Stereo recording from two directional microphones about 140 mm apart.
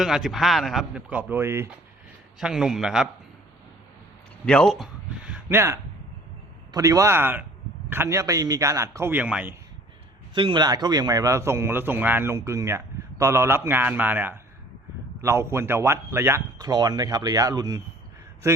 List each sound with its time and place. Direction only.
0.0 s speech: centre (ahead or behind); by 1.7 s 20° right (ahead or behind)
2.4 s speech: 5° right (ahead or behind)
4.4 s a man's voice: 5° left (ahead or behind)
10.3 s a man's voice: 35° right (ahead or behind); by 16.4 s 15° right (ahead or behind)
16.6 s a man's voice: 30° right (ahead or behind)